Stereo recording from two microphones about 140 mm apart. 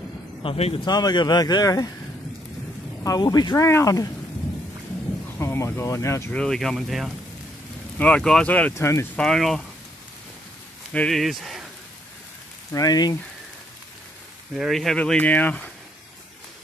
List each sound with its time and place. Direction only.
0.4 s speech: 40° left (ahead or behind)
0.8 s speech: 30° left (ahead or behind)
3.0 s speech: 25° left (ahead or behind)
5.4 s speech: 20° left (ahead or behind)
6.3 s speech: 5° left (ahead or behind)
9.1 s speech: 5° left (ahead or behind)
10.9 s speech: 5° left (ahead or behind)
12.7 s speech: 30° left (ahead or behind)
14.5 s speech: centre (ahead or behind)